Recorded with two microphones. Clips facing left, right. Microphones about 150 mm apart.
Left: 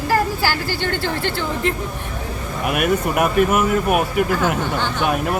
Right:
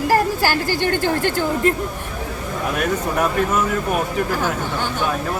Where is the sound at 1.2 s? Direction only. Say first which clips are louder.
Right 3 dB; 45° right (ahead or behind).